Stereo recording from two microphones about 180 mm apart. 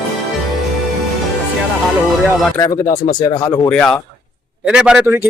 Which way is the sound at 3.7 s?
5° left (ahead or behind).